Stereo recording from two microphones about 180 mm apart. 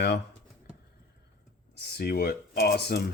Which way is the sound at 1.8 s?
60° left (ahead or behind).